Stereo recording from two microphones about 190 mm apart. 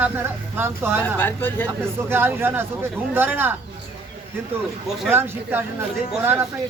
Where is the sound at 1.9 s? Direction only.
10° right (ahead or behind).